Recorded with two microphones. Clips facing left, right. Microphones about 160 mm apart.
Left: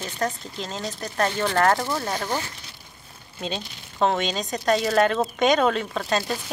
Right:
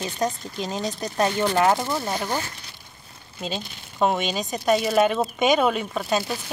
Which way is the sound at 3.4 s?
5° right (ahead or behind).